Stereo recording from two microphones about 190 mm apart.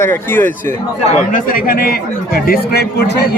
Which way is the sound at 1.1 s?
45° left (ahead or behind).